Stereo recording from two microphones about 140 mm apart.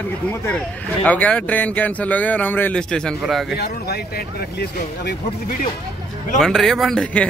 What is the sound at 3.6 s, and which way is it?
Speech, 90° left.